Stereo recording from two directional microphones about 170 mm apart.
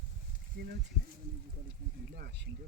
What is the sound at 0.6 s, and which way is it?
Speech, 75° right (ahead or behind).